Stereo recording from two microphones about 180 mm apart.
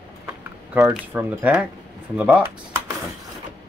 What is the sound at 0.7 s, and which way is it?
Speech, 15° right (ahead or behind).